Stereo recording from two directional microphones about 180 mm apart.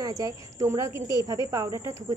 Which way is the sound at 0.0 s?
20° right (ahead or behind).